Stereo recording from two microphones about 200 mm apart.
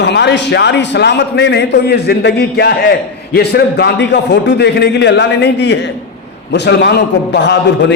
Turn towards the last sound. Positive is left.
turn(degrees=60)  # may be behind; listen again after turning